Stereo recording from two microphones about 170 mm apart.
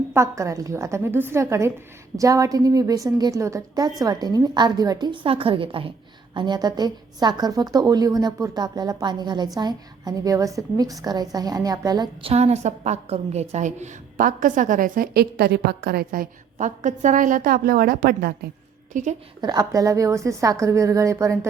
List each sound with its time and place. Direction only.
0.1 s a woman's voice: 15° right (ahead or behind)
12.3 s a woman's voice: 40° right (ahead or behind); by 18.3 s 65° right (ahead or behind)
18.9 s a woman's voice: 45° right (ahead or behind)
19.4 s a woman's voice: 20° right (ahead or behind)